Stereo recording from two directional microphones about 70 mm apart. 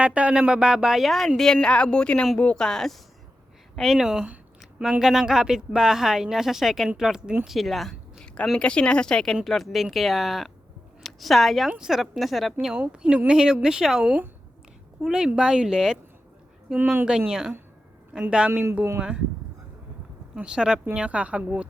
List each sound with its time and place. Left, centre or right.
0.0 s speech: centre
1.6 s speech: centre
8.5 s speech: centre
12.9 s speech: centre
16.7 s a woman's voice: right
17.1 s speech: centre
20.3 s speech: centre